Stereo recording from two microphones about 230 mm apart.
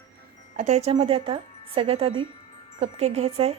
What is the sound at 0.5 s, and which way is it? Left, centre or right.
Speech, right.